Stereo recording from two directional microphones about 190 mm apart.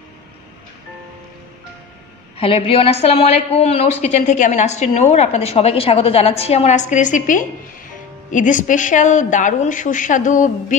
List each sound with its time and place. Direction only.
2.3 s a woman's voice: 30° left (ahead or behind)